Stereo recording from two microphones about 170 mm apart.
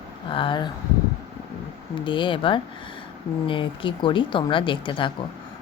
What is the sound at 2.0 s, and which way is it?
A woman's voice, 30° left (ahead or behind).